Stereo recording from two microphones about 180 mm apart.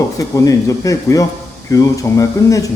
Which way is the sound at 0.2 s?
20° left (ahead or behind).